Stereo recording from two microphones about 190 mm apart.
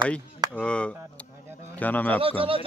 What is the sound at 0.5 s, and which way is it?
Speech, 5° left (ahead or behind).